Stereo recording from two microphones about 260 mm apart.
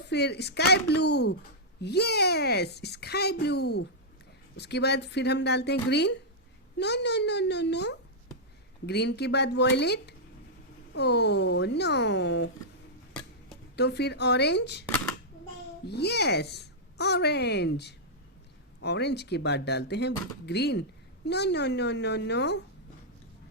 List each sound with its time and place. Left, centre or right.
0.1 s a child's voice: left
13.7 s a child's voice: left
15.9 s a child's voice: left